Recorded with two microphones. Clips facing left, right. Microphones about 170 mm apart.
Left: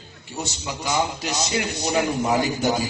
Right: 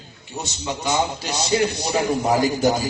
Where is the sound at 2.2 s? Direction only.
40° right (ahead or behind).